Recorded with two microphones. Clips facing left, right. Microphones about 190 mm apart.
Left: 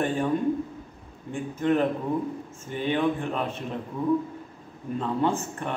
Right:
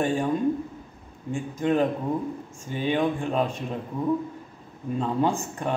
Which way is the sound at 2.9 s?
15° right (ahead or behind).